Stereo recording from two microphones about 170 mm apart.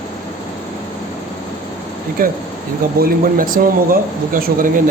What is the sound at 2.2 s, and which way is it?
Speech, 60° right (ahead or behind).